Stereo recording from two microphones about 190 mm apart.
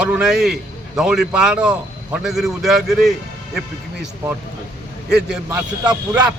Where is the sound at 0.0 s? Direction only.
5° right (ahead or behind).